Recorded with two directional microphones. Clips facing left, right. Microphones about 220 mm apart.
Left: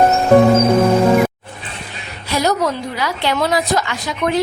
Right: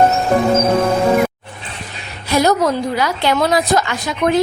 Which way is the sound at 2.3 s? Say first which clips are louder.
Right 3 dB; 45° right (ahead or behind).